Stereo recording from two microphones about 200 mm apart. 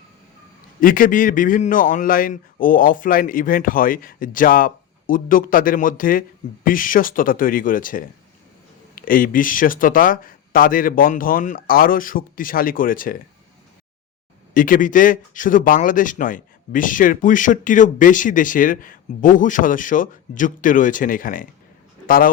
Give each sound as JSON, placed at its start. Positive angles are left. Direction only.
{"t": 0.8, "sound": "a man's voice", "side_deg": 45}
{"t": 14.5, "sound": "a man's voice", "side_deg": 45}